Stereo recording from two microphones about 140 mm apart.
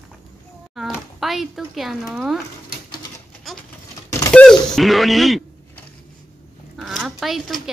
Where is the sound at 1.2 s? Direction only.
Centre (ahead or behind).